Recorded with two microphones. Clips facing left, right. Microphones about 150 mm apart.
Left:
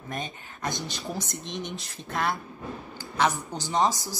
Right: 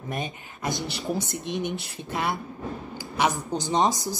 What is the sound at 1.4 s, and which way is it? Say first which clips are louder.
Speech: right 6 dB; 60° right (ahead or behind).